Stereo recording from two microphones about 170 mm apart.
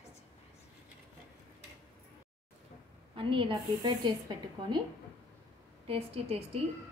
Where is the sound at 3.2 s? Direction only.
30° right (ahead or behind).